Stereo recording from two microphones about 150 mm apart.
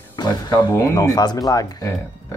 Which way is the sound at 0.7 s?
20° left (ahead or behind).